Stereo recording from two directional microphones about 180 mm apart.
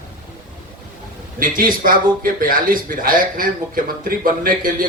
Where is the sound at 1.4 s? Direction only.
50° right (ahead or behind).